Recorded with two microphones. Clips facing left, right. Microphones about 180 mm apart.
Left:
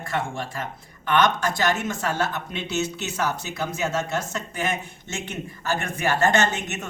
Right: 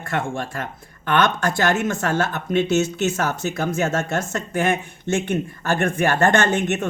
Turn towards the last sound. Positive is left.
turn(degrees=-55)  # may be behind; listen again after turning